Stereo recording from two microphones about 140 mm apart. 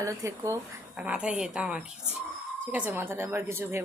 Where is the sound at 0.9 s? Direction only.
10° right (ahead or behind).